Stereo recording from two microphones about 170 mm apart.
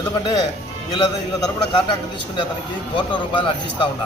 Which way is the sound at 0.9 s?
30° left (ahead or behind).